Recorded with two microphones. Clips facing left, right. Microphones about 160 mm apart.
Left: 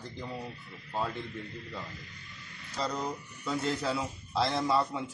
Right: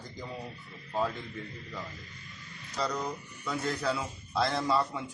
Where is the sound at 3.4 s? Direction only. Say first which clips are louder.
Even; 25° left (ahead or behind).